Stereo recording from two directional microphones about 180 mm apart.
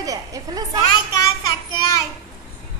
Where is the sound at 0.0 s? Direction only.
20° right (ahead or behind).